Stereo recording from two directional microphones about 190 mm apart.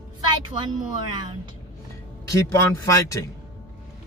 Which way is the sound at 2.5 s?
15° left (ahead or behind).